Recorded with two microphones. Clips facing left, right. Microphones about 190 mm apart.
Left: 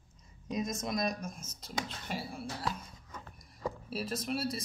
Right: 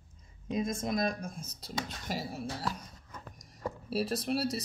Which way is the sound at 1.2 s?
30° right (ahead or behind).